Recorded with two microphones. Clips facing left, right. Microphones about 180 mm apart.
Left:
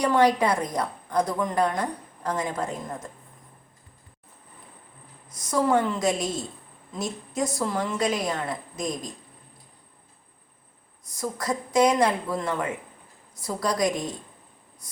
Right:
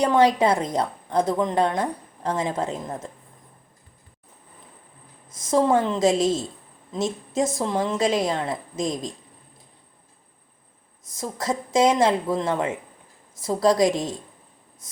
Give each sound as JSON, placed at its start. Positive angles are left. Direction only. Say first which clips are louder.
{"t": 0.0, "sound": "a woman's voice", "louder": "right 2 dB", "side_deg": -25}
{"t": 5.3, "sound": "a woman's voice", "louder": "right 3 dB", "side_deg": -25}
{"t": 11.1, "sound": "a woman's voice", "louder": "right 1 dB", "side_deg": -25}